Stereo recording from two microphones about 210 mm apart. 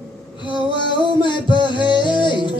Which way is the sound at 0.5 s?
20° left (ahead or behind).